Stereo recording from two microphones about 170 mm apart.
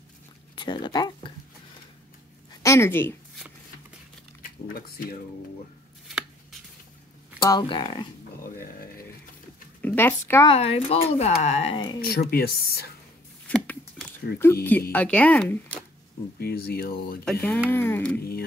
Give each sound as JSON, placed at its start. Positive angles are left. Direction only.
{"t": 0.6, "sound": "speech", "side_deg": 25}
{"t": 2.5, "sound": "a woman's voice", "side_deg": 15}
{"t": 4.4, "sound": "speech", "side_deg": 55}
{"t": 7.4, "sound": "speech", "side_deg": 25}
{"t": 8.5, "sound": "speech", "side_deg": 60}
{"t": 9.8, "sound": "speech", "side_deg": 10}
{"t": 10.4, "sound": "speech", "side_deg": 35}
{"t": 12.1, "sound": "speech", "side_deg": 65}
{"t": 14.4, "sound": "speech", "side_deg": 15}
{"t": 16.3, "sound": "speech", "side_deg": 70}
{"t": 17.2, "sound": "speech", "side_deg": 5}